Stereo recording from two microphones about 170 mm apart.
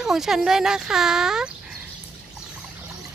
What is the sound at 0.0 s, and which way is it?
Speech, 5° right (ahead or behind).